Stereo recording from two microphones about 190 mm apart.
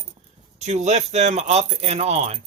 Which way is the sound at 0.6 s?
35° right (ahead or behind).